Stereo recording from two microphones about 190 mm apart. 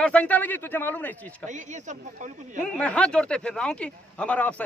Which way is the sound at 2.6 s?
5° left (ahead or behind).